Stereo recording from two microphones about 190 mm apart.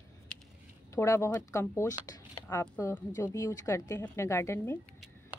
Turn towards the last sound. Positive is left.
turn(degrees=15)  # may be behind; listen again after turning